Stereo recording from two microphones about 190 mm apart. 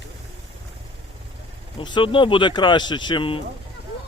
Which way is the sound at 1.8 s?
25° left (ahead or behind).